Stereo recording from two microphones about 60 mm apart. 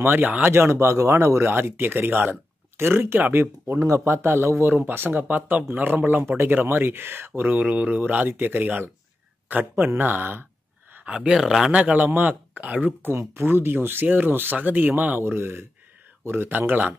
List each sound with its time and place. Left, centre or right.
0.1 s speech: right
0.5 s speech: right
1.5 s speech: right
3.8 s speech: right
7.4 s speech: right
11.1 s speech: centre
11.7 s speech: right
13.5 s speech: right